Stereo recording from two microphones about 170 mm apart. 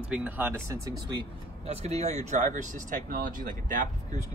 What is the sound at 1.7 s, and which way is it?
Speech, 40° right (ahead or behind).